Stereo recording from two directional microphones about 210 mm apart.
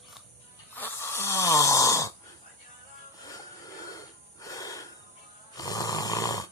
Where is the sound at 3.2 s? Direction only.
15° left (ahead or behind).